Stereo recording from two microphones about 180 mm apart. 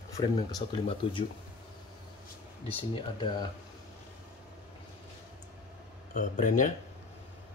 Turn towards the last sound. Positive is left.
turn(degrees=45)  # may be behind; listen again after turning